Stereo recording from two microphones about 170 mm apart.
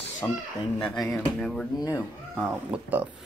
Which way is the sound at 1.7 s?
25° left (ahead or behind).